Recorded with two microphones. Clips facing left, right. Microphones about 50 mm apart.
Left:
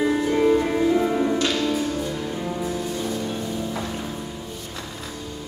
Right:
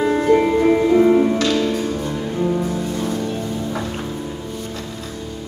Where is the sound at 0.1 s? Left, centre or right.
Right.